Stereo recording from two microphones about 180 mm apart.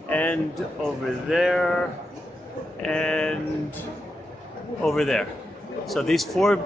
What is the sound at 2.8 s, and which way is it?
Speech, 5° left (ahead or behind).